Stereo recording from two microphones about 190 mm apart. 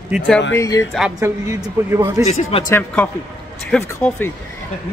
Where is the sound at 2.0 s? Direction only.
15° right (ahead or behind).